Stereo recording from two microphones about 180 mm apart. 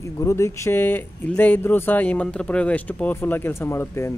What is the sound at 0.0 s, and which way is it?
Speech, 15° left (ahead or behind).